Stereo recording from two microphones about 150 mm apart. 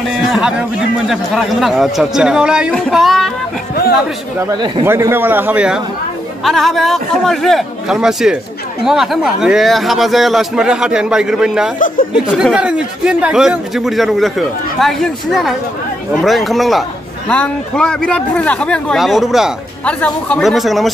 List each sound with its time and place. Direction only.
0.3 s a man's voice: 5° right (ahead or behind)
4.5 s speech: 30° right (ahead or behind)
4.8 s a man's voice: 15° right (ahead or behind)
19.8 s a man's voice: 10° left (ahead or behind)